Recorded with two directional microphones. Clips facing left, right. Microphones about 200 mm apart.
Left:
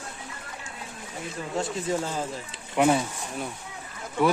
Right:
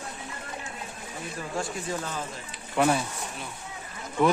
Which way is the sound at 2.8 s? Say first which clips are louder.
Left 2 dB; 15° left (ahead or behind).